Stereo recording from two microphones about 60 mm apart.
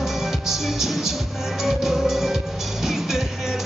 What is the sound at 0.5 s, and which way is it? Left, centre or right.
Music, centre.